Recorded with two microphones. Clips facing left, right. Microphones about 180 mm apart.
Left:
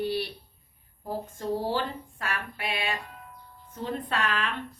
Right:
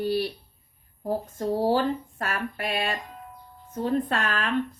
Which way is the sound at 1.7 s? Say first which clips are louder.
Right 7 dB; 45° right (ahead or behind).